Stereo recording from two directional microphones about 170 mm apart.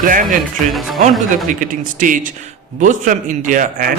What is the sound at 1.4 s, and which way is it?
Speech, 50° right (ahead or behind).